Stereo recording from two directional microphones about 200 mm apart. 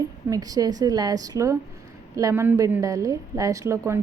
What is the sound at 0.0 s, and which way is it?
A woman's voice, 20° right (ahead or behind).